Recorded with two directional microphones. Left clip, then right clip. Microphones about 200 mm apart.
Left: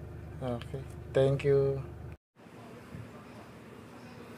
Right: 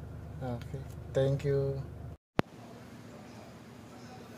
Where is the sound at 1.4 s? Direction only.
25° left (ahead or behind).